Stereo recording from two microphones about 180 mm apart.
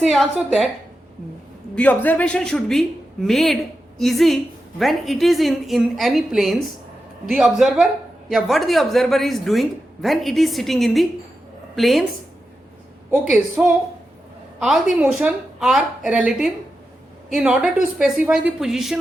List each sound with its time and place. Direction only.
0.0 s a woman's voice: centre (ahead or behind)
1.7 s a woman's voice: 10° left (ahead or behind)
13.6 s a woman's voice: 10° right (ahead or behind)